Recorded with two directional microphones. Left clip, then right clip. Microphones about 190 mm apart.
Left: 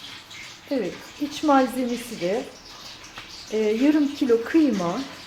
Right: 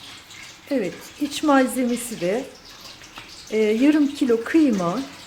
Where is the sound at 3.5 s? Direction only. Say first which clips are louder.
Right 2 dB; 20° right (ahead or behind).